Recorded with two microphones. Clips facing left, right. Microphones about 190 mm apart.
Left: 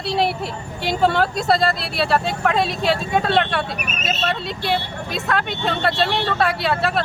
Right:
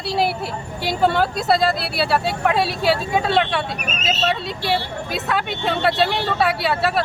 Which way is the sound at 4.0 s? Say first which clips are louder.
Right 2 dB; 55° left (ahead or behind).